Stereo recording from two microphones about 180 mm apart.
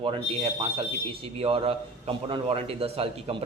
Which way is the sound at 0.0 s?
30° right (ahead or behind).